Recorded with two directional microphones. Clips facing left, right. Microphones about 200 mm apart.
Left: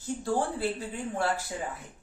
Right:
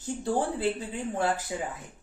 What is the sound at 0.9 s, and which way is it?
Speech, 20° right (ahead or behind).